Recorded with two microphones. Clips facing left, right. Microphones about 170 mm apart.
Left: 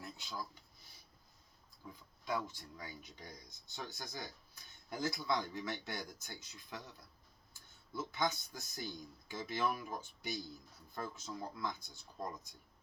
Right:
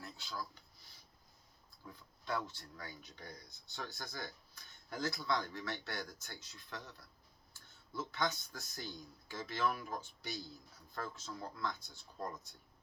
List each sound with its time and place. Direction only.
0.0 s a sound: 15° left (ahead or behind)
1.8 s speech: 15° left (ahead or behind)
7.9 s speech: 15° left (ahead or behind)